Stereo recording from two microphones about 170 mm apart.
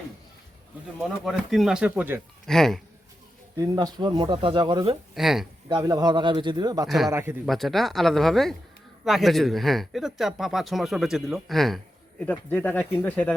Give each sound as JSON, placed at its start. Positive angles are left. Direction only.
{"t": 1.2, "sound": "speech", "side_deg": 0}
{"t": 2.5, "sound": "speech", "side_deg": 0}
{"t": 3.6, "sound": "speech", "side_deg": -20}
{"t": 5.1, "sound": "speech", "side_deg": 0}
{"t": 5.6, "sound": "speech", "side_deg": -25}
{"t": 6.8, "sound": "speech", "side_deg": 0}
{"t": 7.1, "sound": "a man's voice", "side_deg": -15}
{"t": 7.4, "sound": "speech", "side_deg": 0}